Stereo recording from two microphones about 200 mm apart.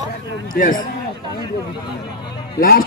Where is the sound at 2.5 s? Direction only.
45° left (ahead or behind).